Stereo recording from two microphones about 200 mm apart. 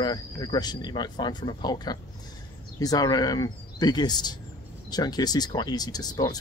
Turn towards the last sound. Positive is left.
turn(degrees=20)  # may be behind; listen again after turning